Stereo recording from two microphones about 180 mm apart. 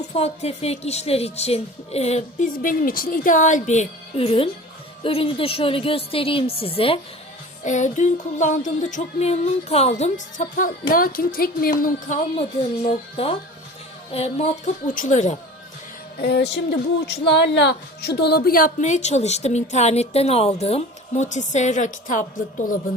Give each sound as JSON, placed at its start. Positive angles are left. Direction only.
{"t": 0.1, "sound": "a woman's voice", "side_deg": 35}
{"t": 7.6, "sound": "music", "side_deg": 40}
{"t": 14.1, "sound": "a woman's voice", "side_deg": 35}
{"t": 16.1, "sound": "a woman's voice", "side_deg": 65}